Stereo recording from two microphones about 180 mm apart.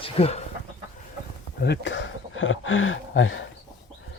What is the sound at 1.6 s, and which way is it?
Speech, 80° left.